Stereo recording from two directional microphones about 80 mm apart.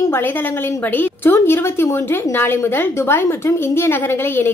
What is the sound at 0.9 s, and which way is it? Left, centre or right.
A woman's voice, left.